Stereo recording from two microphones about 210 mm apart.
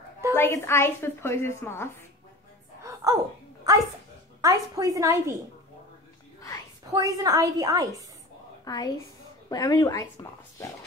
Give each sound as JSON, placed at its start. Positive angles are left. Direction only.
{"t": 0.4, "sound": "a woman's voice", "side_deg": 10}
{"t": 2.8, "sound": "music", "side_deg": -15}
{"t": 3.7, "sound": "a sound", "side_deg": -15}
{"t": 4.4, "sound": "a woman's voice", "side_deg": -15}
{"t": 6.9, "sound": "a woman's voice", "side_deg": -15}
{"t": 8.6, "sound": "a woman's voice", "side_deg": 20}